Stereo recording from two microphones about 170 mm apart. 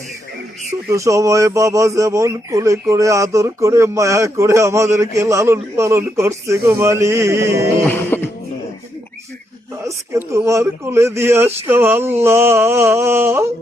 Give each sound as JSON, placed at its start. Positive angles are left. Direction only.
{"t": 0.9, "sound": "speech", "side_deg": -20}
{"t": 7.9, "sound": "music", "side_deg": 10}
{"t": 9.8, "sound": "speech", "side_deg": -15}